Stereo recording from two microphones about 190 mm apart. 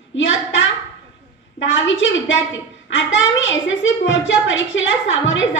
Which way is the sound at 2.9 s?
75° left (ahead or behind).